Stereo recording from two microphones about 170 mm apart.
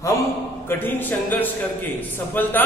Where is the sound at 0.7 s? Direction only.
10° left (ahead or behind).